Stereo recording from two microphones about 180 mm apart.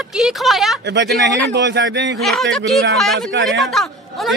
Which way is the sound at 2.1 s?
Centre (ahead or behind).